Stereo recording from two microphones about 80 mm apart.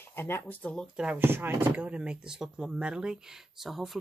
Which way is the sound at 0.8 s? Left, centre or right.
Centre.